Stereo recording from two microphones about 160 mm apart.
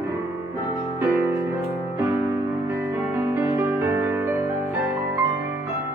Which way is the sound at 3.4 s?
15° right (ahead or behind).